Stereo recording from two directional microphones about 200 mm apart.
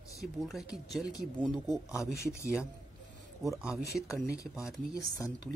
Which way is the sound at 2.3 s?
15° left (ahead or behind).